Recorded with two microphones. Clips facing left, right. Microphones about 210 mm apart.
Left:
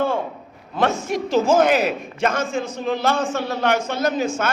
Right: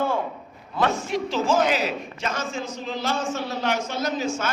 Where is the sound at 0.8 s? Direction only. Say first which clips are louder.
Left 3 dB; 45° left (ahead or behind).